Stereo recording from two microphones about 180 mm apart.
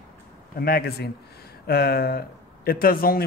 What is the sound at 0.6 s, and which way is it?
Speech, 60° left (ahead or behind).